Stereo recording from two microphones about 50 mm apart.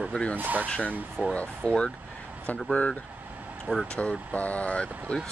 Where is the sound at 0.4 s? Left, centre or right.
Right.